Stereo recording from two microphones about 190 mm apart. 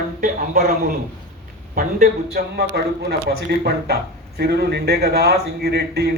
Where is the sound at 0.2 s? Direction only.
50° right (ahead or behind).